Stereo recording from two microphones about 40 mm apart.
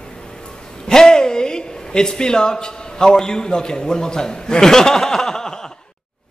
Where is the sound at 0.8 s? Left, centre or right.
Centre.